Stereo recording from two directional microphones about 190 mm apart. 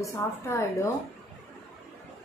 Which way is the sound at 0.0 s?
15° left (ahead or behind).